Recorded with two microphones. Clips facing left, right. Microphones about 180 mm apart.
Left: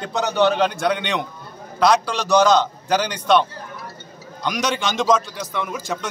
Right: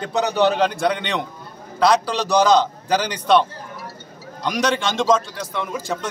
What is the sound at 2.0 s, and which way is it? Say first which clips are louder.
Speech: left 1 dB; 35° right (ahead or behind).